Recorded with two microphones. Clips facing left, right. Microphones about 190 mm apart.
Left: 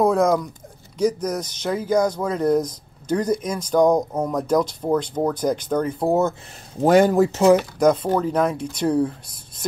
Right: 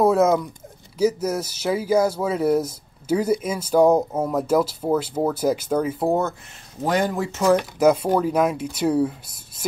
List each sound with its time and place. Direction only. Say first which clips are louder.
0.0 s speech: right 1 dB; 5° right (ahead or behind)
6.8 s speech: left 7 dB; 45° left (ahead or behind)
7.8 s speech: even; 10° right (ahead or behind)